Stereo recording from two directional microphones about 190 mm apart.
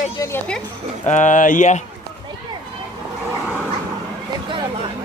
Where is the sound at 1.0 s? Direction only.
40° left (ahead or behind).